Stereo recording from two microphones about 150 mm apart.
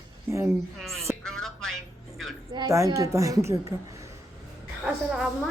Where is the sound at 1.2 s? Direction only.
5° left (ahead or behind).